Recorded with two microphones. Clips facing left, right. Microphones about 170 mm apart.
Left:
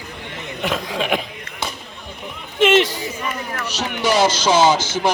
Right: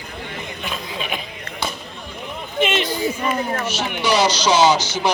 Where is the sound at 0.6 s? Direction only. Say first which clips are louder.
Left 8 dB; 85° left.